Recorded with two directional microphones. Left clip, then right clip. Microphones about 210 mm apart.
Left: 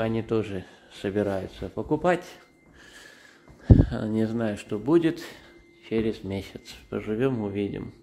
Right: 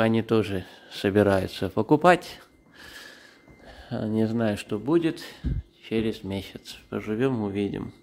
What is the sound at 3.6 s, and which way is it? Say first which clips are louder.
Speech: left 8 dB; 5° right (ahead or behind).